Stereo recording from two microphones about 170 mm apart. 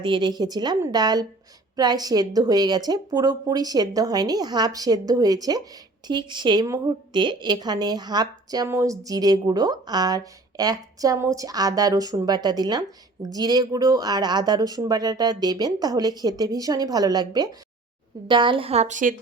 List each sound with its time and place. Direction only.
0.0 s a woman's voice: 25° right (ahead or behind); by 19.1 s 45° right (ahead or behind)